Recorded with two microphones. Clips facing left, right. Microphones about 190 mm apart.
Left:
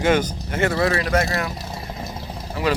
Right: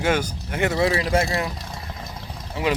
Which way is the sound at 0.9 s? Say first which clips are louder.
Even; 25° right (ahead or behind).